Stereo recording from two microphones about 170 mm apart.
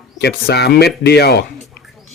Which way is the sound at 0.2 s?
70° left (ahead or behind).